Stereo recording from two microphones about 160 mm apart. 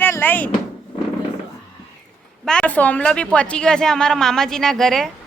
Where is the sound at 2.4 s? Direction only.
5° left (ahead or behind).